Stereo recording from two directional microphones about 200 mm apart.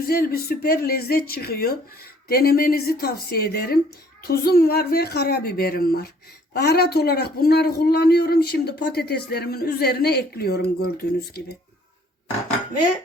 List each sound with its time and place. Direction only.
0.1 s a man's voice: 50° left (ahead or behind)